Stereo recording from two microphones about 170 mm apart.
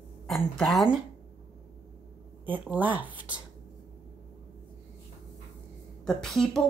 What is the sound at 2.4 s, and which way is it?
A woman's voice, 10° right (ahead or behind).